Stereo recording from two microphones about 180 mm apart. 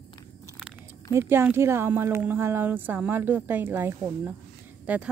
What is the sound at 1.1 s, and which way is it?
Speech, 15° right (ahead or behind).